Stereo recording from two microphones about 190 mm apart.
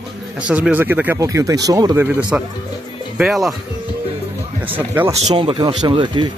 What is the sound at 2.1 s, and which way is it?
Speech, 5° right (ahead or behind).